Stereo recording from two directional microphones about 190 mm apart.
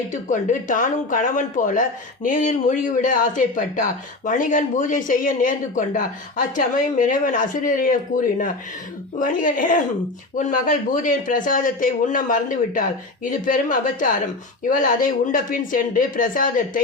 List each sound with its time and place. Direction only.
0.1 s a man's voice: 40° left (ahead or behind)
9.1 s a man's voice: 45° left (ahead or behind)